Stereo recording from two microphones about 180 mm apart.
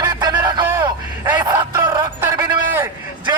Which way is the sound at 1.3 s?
25° right (ahead or behind).